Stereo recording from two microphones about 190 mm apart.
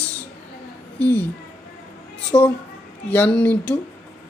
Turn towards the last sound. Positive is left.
turn(degrees=5)  # may be behind; listen again after turning